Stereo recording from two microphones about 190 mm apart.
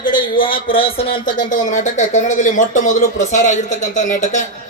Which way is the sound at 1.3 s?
40° left (ahead or behind).